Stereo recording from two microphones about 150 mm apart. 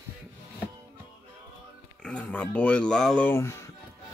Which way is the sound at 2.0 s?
10° left (ahead or behind).